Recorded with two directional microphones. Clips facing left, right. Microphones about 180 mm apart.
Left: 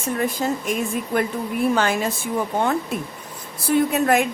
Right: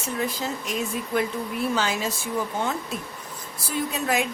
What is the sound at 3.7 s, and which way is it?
Speech, 55° left (ahead or behind).